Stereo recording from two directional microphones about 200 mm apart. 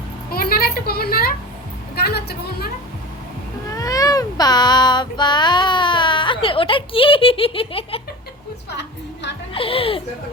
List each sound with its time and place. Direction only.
0.3 s a sound: 50° left (ahead or behind)
2.0 s a woman's voice: 50° left (ahead or behind)
3.7 s cat: 15° left (ahead or behind)
8.7 s music: 60° left (ahead or behind)
9.6 s speech: 30° left (ahead or behind)